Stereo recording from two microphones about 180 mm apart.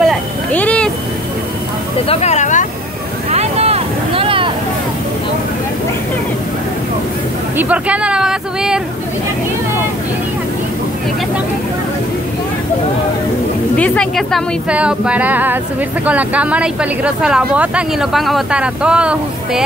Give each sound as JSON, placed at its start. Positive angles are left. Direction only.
{"t": 0.0, "sound": "vehicle", "side_deg": 5}
{"t": 2.0, "sound": "speech", "side_deg": 35}
{"t": 3.3, "sound": "vehicle", "side_deg": -35}
{"t": 7.5, "sound": "a sound", "side_deg": -10}
{"t": 13.7, "sound": "speech", "side_deg": 5}